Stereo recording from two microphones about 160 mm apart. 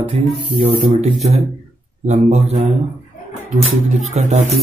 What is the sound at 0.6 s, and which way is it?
Speech, 40° right (ahead or behind).